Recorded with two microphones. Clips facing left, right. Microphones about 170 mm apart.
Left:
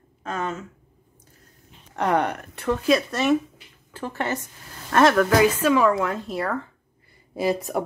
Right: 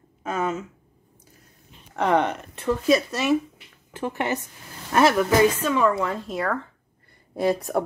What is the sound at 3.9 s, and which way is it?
Speech, 15° right (ahead or behind).